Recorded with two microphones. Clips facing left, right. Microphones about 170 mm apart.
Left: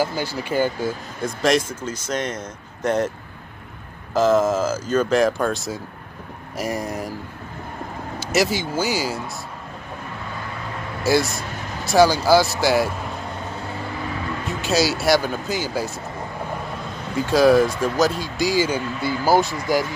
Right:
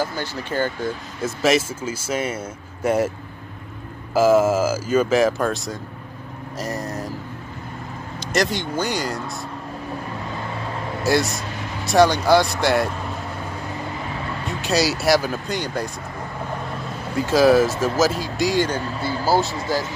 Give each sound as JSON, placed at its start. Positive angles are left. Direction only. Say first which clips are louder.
{"t": 0.0, "sound": "speech", "louder": "left 2 dB", "side_deg": 10}
{"t": 1.2, "sound": "speech", "louder": "right 1 dB", "side_deg": -5}
{"t": 4.1, "sound": "speech", "louder": "right 2 dB", "side_deg": -10}
{"t": 6.5, "sound": "speech", "louder": "left 2 dB", "side_deg": 10}
{"t": 8.2, "sound": "speech", "louder": "left 1 dB", "side_deg": 5}
{"t": 11.1, "sound": "speech", "louder": "left 1 dB", "side_deg": 0}
{"t": 14.4, "sound": "speech", "louder": "even", "side_deg": 0}
{"t": 17.1, "sound": "speech", "louder": "even", "side_deg": 0}
{"t": 18.8, "sound": "speech", "louder": "even", "side_deg": -35}
{"t": 19.2, "sound": "speech", "louder": "left 2 dB", "side_deg": 15}